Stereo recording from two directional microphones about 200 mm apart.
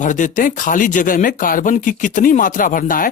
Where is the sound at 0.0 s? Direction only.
40° left (ahead or behind).